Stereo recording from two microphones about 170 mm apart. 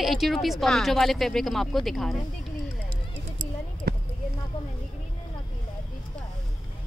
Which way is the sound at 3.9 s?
70° right (ahead or behind).